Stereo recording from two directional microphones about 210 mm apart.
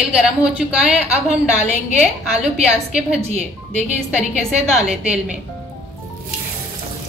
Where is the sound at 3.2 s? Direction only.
30° right (ahead or behind).